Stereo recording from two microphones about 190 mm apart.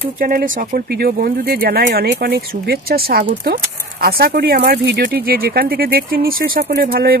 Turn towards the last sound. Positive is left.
turn(degrees=-50)  # may be behind; listen again after turning